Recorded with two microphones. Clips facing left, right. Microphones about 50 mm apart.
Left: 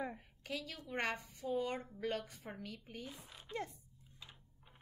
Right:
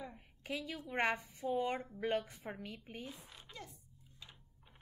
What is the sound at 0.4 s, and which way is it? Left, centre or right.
A woman's voice, centre.